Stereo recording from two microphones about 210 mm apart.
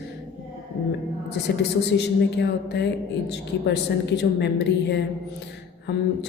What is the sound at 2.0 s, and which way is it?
A woman's voice, 55° left (ahead or behind).